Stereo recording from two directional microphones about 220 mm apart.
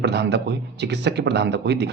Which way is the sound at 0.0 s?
50° right (ahead or behind).